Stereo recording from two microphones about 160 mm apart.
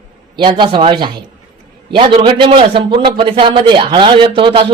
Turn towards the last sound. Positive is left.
turn(degrees=-30)  # may be behind; listen again after turning